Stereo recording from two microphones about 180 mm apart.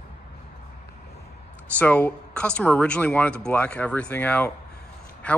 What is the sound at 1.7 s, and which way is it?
A man's voice, 10° left (ahead or behind).